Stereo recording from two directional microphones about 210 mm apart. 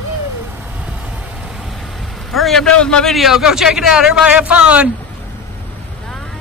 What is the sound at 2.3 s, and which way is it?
Speech, centre (ahead or behind).